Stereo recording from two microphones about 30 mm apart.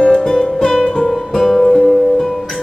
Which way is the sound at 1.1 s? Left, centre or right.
Centre.